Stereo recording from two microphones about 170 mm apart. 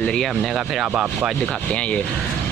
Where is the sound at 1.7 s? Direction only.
5° left (ahead or behind).